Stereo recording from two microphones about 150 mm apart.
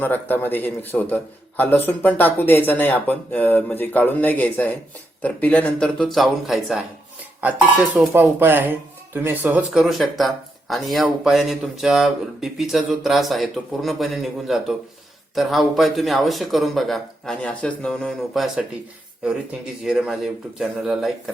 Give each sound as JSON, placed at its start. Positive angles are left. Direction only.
{"t": 0.0, "sound": "a man's voice", "side_deg": 10}
{"t": 8.1, "sound": "speech", "side_deg": -15}
{"t": 19.8, "sound": "speech", "side_deg": -5}